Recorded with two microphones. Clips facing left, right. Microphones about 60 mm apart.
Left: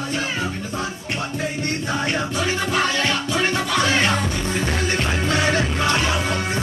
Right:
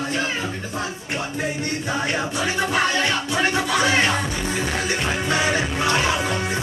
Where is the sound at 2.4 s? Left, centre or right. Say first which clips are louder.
Right 1 dB; right.